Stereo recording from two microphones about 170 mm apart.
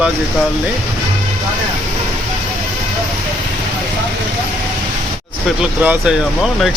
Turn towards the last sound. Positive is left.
turn(degrees=-5)  # may be behind; listen again after turning